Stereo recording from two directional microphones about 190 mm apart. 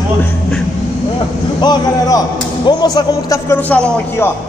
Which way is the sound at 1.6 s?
20° left (ahead or behind).